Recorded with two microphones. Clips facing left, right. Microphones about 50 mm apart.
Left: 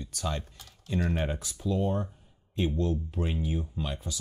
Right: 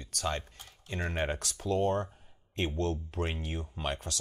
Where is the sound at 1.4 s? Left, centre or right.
Right.